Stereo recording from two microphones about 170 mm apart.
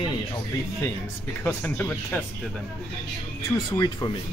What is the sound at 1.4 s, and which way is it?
Speech, 10° left (ahead or behind).